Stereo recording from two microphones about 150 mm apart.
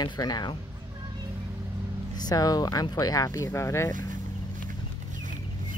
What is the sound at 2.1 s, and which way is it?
Speech, 25° left (ahead or behind).